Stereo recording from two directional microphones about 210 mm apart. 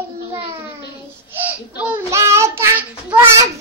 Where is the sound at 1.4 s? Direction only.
5° right (ahead or behind).